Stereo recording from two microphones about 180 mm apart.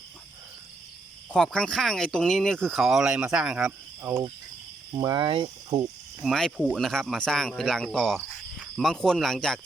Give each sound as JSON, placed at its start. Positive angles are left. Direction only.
{"t": 1.3, "sound": "speech", "side_deg": 5}
{"t": 4.9, "sound": "speech", "side_deg": -25}
{"t": 6.2, "sound": "speech", "side_deg": 0}